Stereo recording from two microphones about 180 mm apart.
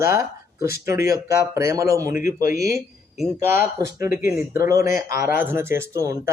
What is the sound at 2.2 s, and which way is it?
Speech, 55° left (ahead or behind).